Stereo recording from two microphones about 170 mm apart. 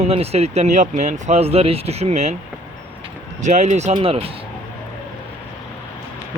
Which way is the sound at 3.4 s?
45° right (ahead or behind).